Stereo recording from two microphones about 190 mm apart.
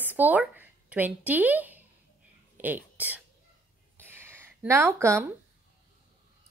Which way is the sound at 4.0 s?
10° right (ahead or behind).